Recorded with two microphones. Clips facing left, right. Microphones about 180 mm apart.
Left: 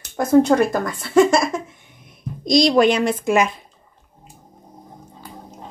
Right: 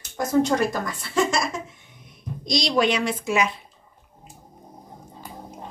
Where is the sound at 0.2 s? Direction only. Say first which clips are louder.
Left 6 dB; 55° left (ahead or behind).